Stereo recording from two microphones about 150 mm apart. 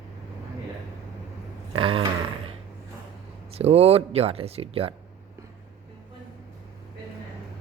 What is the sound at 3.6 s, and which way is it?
Speech, 45° right (ahead or behind).